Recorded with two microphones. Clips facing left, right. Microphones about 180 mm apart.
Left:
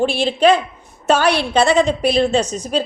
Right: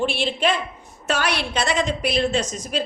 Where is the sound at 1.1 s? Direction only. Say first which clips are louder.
Left 8 dB; 30° left (ahead or behind).